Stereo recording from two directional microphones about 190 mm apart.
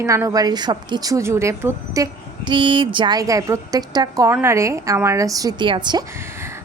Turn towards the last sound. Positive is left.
turn(degrees=-25)  # may be behind; listen again after turning